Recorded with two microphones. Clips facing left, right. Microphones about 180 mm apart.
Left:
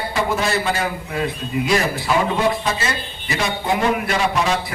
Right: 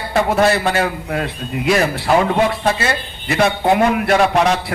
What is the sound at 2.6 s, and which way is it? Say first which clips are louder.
A man's voice: right 5 dB; 60° right (ahead or behind).